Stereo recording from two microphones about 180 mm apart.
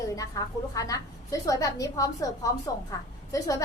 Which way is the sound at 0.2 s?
20° left (ahead or behind).